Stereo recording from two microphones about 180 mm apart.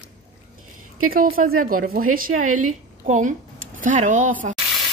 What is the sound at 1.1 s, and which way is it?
A woman's voice, 50° right (ahead or behind).